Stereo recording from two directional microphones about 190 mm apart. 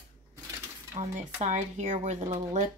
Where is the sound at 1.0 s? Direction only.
40° right (ahead or behind).